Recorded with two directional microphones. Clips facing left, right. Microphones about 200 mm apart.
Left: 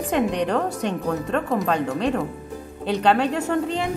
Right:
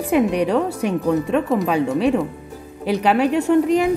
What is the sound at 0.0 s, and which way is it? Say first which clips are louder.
A woman's voice: right 4 dB; 10° right (ahead or behind).